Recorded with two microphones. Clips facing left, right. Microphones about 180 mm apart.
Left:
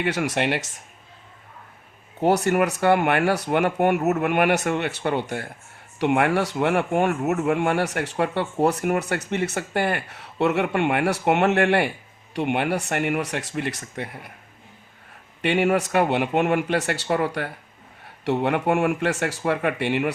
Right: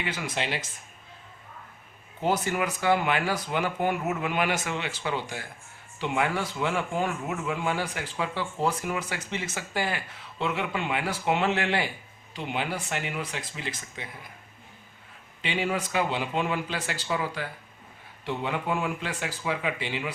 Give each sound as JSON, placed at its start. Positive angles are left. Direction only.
{"t": 0.0, "sound": "speech", "side_deg": 70}
{"t": 2.2, "sound": "speech", "side_deg": 70}
{"t": 15.4, "sound": "speech", "side_deg": 65}